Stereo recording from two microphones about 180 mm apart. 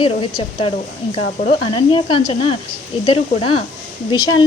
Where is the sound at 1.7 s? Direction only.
30° left (ahead or behind).